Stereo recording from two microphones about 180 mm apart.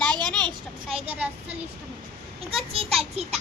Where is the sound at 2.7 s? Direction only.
30° right (ahead or behind).